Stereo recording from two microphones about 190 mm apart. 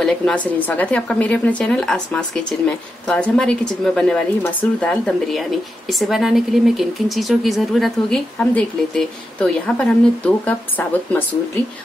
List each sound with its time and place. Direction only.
0.0 s speech: 5° left (ahead or behind)